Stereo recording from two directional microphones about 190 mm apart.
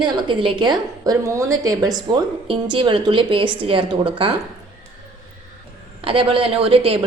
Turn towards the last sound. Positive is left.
turn(degrees=-30)  # may be behind; listen again after turning